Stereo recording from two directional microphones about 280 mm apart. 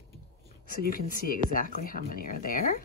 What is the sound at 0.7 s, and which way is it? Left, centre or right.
Speech, left.